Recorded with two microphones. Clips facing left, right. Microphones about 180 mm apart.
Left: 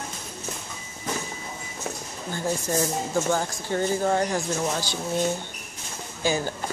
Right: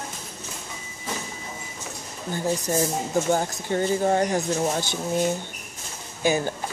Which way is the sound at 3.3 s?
20° right (ahead or behind).